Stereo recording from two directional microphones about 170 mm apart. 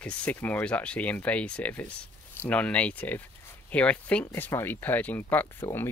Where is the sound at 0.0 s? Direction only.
10° left (ahead or behind).